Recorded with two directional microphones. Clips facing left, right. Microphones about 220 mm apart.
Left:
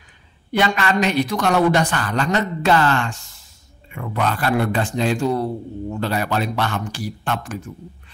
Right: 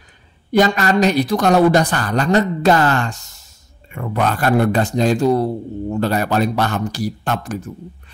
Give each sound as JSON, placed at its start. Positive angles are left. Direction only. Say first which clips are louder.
{"t": 0.5, "sound": "speech", "louder": "right 5 dB", "side_deg": -40}